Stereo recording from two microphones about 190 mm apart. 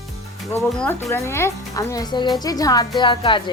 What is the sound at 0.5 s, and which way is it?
Speech, 10° left (ahead or behind).